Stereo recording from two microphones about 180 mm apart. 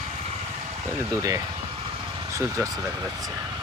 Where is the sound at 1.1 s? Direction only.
20° right (ahead or behind).